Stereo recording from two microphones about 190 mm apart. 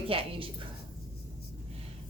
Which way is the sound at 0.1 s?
30° right (ahead or behind).